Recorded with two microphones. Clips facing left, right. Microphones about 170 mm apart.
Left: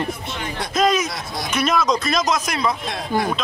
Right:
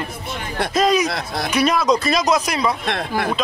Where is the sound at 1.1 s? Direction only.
60° right (ahead or behind).